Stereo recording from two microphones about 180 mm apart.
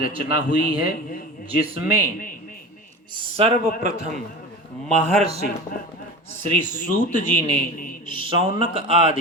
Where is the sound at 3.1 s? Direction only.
30° right (ahead or behind).